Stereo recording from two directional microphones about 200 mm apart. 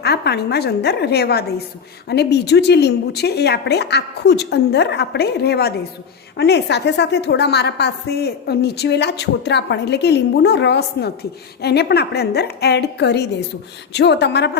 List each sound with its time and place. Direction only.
0.0 s a woman's voice: 55° left (ahead or behind)